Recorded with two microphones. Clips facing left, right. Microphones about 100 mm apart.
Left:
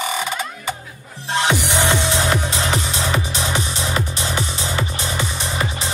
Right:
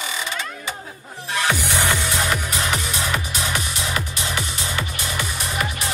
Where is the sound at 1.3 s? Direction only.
20° left (ahead or behind).